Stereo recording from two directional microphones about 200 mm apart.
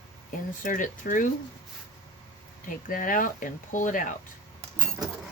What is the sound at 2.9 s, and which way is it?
Speech, 40° left (ahead or behind).